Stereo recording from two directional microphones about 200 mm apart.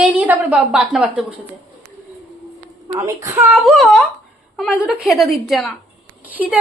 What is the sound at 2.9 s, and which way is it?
Speech, 15° right (ahead or behind).